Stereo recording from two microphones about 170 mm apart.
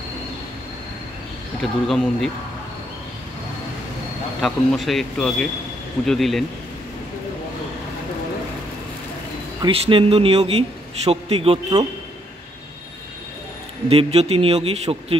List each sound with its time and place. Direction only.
1.6 s speech: centre (ahead or behind)
4.4 s speech: centre (ahead or behind)
9.7 s a man's voice: 30° right (ahead or behind)
13.8 s a man's voice: 35° right (ahead or behind)